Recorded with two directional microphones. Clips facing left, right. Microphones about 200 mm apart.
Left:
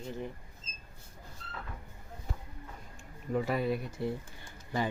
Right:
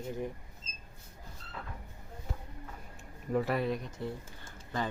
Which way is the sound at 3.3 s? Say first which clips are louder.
Even; centre (ahead or behind).